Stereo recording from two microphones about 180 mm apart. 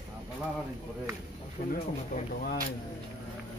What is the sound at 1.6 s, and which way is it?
Speech, 45° left (ahead or behind).